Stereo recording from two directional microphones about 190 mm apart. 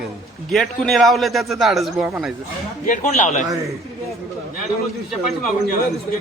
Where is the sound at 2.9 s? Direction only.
45° left (ahead or behind).